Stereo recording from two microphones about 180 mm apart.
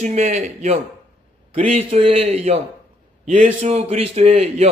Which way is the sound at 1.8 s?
30° right (ahead or behind).